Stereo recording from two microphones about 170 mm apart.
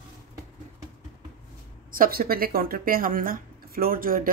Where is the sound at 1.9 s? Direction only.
55° right (ahead or behind).